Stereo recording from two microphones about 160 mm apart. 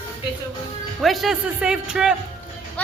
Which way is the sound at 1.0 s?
Centre (ahead or behind).